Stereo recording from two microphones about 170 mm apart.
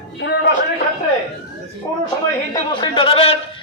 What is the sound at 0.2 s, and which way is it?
Speech, 90° left.